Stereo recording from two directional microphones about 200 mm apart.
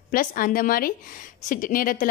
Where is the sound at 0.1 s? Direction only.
45° left (ahead or behind).